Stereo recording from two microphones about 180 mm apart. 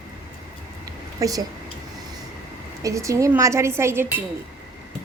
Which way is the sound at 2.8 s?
15° right (ahead or behind).